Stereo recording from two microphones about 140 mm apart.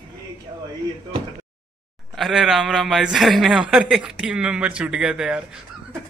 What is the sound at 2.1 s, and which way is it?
A man's voice, centre (ahead or behind).